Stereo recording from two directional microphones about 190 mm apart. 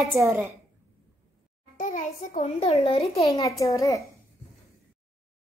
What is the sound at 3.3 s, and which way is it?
Speech, 20° left (ahead or behind).